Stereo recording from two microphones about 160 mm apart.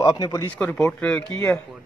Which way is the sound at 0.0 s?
20° left (ahead or behind).